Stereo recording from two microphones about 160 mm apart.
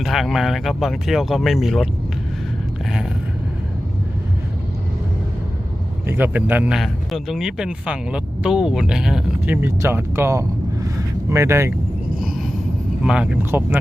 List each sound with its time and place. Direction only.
0.0 s speech: centre (ahead or behind)
6.1 s speech: 10° right (ahead or behind)
13.0 s speech: 5° right (ahead or behind)